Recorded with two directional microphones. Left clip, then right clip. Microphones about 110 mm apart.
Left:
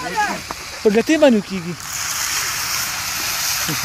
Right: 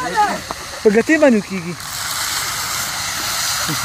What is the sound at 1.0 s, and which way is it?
Speech, 60° left (ahead or behind).